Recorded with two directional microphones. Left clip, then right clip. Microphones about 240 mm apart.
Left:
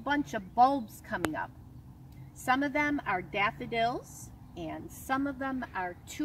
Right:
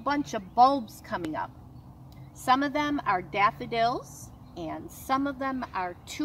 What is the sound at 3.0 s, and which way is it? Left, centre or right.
Speech, centre.